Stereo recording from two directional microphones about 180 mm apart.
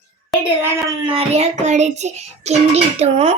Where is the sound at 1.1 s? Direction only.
35° right (ahead or behind).